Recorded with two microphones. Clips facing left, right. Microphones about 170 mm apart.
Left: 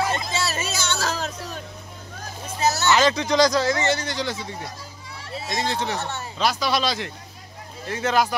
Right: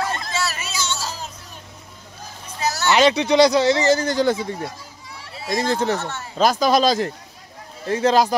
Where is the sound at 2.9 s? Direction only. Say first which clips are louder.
Right 6 dB; 15° right (ahead or behind).